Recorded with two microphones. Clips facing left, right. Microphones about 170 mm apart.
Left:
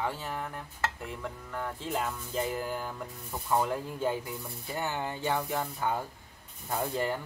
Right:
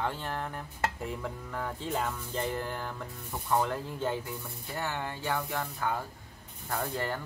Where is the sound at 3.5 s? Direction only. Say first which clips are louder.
Even; 10° left (ahead or behind).